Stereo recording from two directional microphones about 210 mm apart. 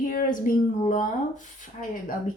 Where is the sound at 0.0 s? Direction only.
40° left (ahead or behind).